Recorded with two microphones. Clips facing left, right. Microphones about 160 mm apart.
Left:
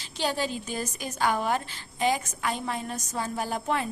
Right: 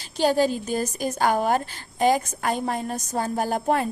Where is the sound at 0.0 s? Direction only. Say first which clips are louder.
Right 9 dB; 45° right (ahead or behind).